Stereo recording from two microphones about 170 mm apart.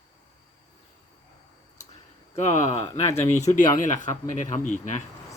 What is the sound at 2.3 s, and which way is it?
Speech, 40° left (ahead or behind).